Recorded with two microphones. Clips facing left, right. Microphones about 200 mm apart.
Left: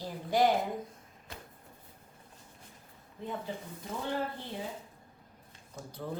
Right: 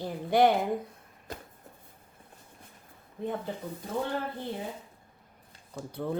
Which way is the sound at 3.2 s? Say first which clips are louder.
Right 6 dB; 60° right (ahead or behind).